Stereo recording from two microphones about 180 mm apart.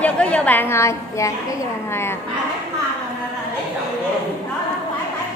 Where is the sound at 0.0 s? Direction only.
10° left (ahead or behind).